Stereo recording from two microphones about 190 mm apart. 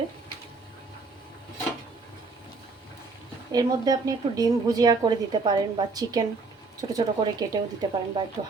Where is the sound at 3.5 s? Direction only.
20° right (ahead or behind).